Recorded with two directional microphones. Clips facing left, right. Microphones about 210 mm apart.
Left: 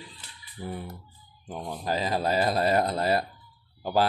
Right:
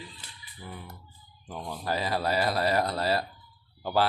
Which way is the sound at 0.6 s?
35° left (ahead or behind).